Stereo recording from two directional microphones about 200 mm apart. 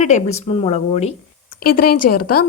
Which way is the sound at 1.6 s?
50° left (ahead or behind).